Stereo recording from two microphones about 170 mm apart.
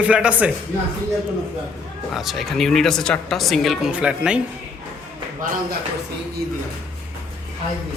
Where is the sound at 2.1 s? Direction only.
Centre (ahead or behind).